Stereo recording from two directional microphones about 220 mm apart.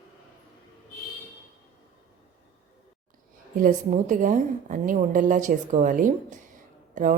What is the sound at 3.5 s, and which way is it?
A woman's voice, 40° right (ahead or behind).